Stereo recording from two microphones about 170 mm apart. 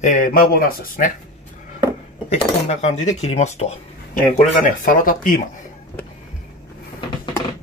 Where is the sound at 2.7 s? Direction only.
45° left (ahead or behind).